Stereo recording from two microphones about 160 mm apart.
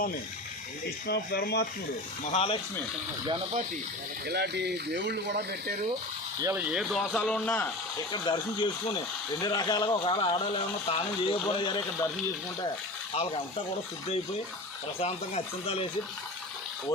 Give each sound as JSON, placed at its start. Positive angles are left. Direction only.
{"t": 1.0, "sound": "speech", "side_deg": 80}
{"t": 2.2, "sound": "speech", "side_deg": 40}
{"t": 4.3, "sound": "speech", "side_deg": -90}
{"t": 6.4, "sound": "speech", "side_deg": -10}
{"t": 7.1, "sound": "a man's voice", "side_deg": 10}
{"t": 7.9, "sound": "speech", "side_deg": 25}
{"t": 9.4, "sound": "speech", "side_deg": 25}
{"t": 15.0, "sound": "speech", "side_deg": 40}